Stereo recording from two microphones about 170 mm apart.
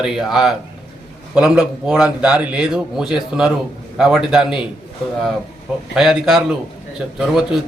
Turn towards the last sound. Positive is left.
turn(degrees=-5)  # may be behind; listen again after turning